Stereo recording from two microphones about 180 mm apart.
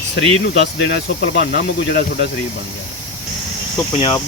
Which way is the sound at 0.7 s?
70° left (ahead or behind).